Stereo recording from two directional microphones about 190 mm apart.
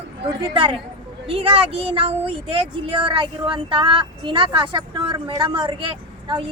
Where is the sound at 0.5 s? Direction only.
25° right (ahead or behind).